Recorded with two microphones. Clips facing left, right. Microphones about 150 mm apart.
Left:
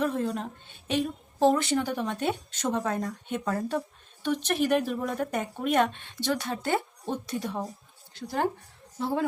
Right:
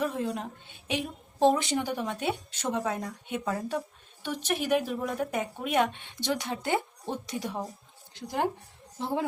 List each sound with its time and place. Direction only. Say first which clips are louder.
0.0 s a woman's voice: left 2 dB; 10° right (ahead or behind)